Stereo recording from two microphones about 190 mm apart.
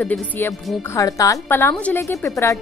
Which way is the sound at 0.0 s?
5° left (ahead or behind).